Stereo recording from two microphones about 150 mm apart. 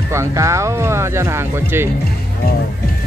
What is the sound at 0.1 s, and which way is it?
Speech, 20° right (ahead or behind).